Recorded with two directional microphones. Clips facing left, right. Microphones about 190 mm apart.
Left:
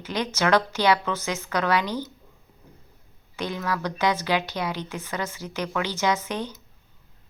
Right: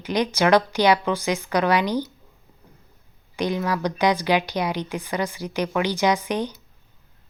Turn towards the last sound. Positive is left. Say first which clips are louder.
# right 4 dB
turn(degrees=-15)  # may be behind; listen again after turning